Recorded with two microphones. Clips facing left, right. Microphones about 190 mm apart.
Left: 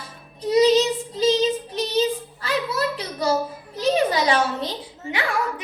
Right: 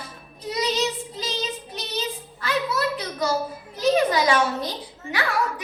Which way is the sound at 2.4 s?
30° left (ahead or behind).